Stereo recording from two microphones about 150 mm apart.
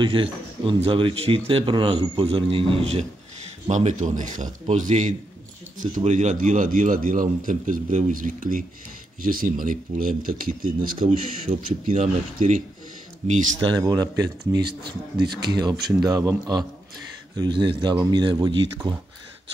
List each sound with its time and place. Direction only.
0.0 s a man's voice: 35° right (ahead or behind)
3.7 s speech: 55° right (ahead or behind)
13.2 s speech: 45° right (ahead or behind)
13.6 s speech: 30° right (ahead or behind)